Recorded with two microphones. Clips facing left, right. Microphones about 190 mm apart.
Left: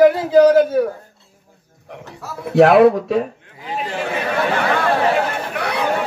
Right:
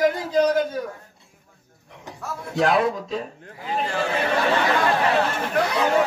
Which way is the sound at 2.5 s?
65° left (ahead or behind).